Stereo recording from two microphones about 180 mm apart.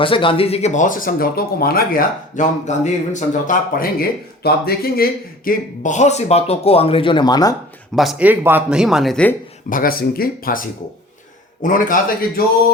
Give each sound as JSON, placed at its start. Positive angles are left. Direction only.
{"t": 0.0, "sound": "speech", "side_deg": 30}
{"t": 4.4, "sound": "speech", "side_deg": 60}
{"t": 5.5, "sound": "speech", "side_deg": 45}
{"t": 7.9, "sound": "speech", "side_deg": -5}
{"t": 9.6, "sound": "speech", "side_deg": 50}